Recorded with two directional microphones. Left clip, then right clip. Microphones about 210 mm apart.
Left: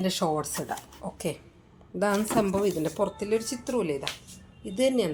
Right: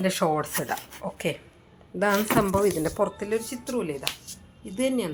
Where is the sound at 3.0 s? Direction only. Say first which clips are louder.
Right 1 dB; 5° left (ahead or behind).